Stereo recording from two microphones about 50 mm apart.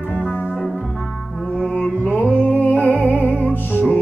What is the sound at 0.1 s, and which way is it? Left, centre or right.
Music, left.